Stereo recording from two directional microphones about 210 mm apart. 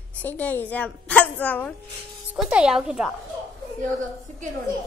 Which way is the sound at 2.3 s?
5° right (ahead or behind).